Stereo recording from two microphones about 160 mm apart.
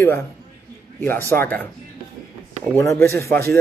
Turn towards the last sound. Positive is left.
turn(degrees=15)  # may be behind; listen again after turning